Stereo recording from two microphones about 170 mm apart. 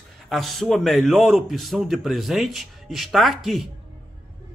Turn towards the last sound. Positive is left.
turn(degrees=0)  # may be behind; listen again after turning